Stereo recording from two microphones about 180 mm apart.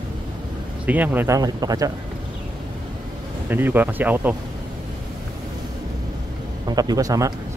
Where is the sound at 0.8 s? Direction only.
10° right (ahead or behind).